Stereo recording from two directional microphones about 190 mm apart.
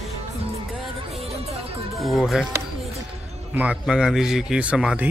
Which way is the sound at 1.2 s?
30° right (ahead or behind).